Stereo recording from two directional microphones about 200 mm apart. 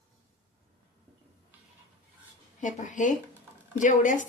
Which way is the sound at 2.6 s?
40° left (ahead or behind).